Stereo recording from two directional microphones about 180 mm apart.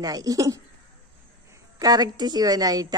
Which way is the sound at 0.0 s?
20° right (ahead or behind).